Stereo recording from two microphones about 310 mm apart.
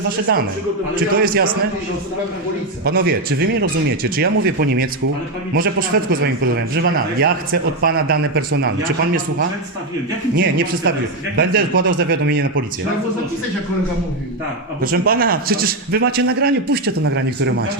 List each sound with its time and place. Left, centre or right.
0.3 s speech: right
2.8 s speech: right
10.3 s a man's voice: right
14.8 s a man's voice: right